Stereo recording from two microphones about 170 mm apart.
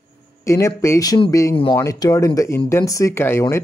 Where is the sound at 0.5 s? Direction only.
15° left (ahead or behind).